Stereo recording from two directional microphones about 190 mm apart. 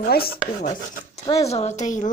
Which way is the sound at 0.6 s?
40° left (ahead or behind).